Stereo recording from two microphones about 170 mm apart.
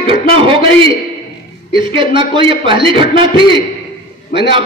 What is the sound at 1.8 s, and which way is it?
A man's voice, 30° right (ahead or behind).